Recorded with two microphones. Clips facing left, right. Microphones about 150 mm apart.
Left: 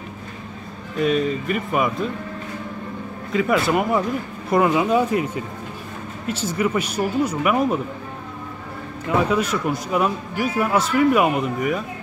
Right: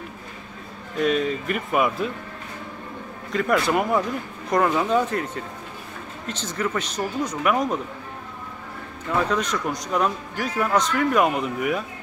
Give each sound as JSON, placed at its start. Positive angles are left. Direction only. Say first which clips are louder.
{"t": 0.9, "sound": "speech", "louder": "left 2 dB", "side_deg": 0}
{"t": 3.3, "sound": "a man's voice", "louder": "left 2 dB", "side_deg": 5}
{"t": 9.2, "sound": "a man's voice", "louder": "left 2 dB", "side_deg": 10}